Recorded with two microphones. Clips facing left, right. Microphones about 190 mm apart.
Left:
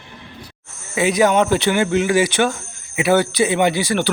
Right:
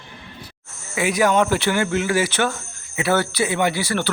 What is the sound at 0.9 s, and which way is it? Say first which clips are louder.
A man's voice: left 3 dB; 25° left (ahead or behind).